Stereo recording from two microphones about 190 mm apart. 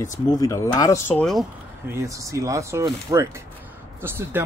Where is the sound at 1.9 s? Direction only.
15° right (ahead or behind).